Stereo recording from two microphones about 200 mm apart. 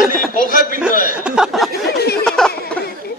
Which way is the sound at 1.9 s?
50° left (ahead or behind).